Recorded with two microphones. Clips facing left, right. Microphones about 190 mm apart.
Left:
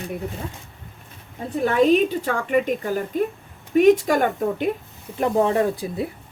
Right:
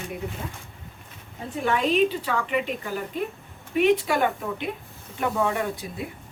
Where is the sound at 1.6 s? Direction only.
40° left (ahead or behind).